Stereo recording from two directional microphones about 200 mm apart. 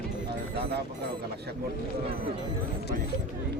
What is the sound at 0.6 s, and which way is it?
Speech, 55° right (ahead or behind).